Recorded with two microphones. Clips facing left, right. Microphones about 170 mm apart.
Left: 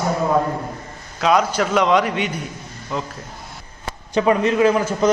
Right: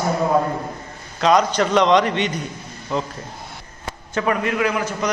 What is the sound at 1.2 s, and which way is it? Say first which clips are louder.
A man's voice: right 1 dB; 5° left (ahead or behind).